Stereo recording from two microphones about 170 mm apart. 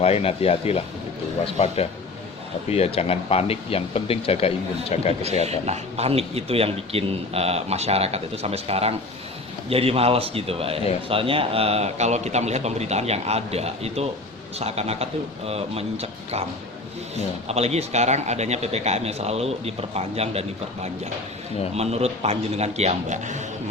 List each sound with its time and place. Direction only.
0.0 s speech: 35° left (ahead or behind)
5.5 s speech: 40° right (ahead or behind)
21.8 s speech: 40° right (ahead or behind)